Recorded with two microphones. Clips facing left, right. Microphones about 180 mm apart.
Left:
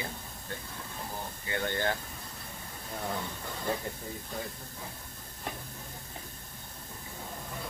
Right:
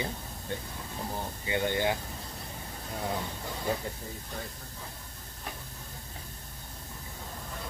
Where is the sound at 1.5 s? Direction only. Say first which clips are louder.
Right 3 dB; 15° right (ahead or behind).